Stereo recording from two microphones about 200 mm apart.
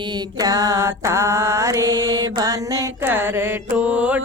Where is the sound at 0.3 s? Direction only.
20° right (ahead or behind).